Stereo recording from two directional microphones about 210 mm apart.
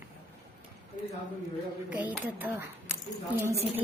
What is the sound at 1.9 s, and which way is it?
Speech, 5° right (ahead or behind).